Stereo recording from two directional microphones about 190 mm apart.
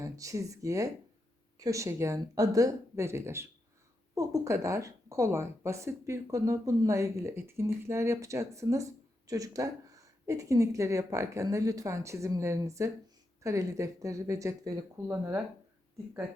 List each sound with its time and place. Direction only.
0.0 s speech: 15° right (ahead or behind)